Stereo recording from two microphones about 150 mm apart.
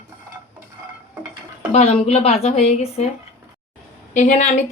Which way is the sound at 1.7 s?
45° left (ahead or behind).